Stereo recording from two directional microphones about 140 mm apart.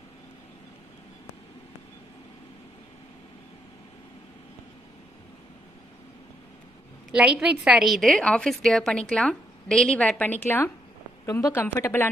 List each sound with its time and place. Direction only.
7.1 s a woman's voice: 5° right (ahead or behind); by 12.1 s 15° left (ahead or behind)